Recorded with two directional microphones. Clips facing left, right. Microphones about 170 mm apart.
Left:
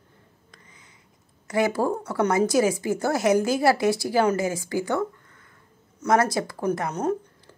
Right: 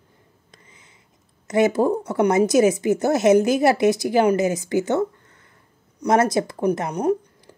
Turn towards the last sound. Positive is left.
turn(degrees=-15)  # may be behind; listen again after turning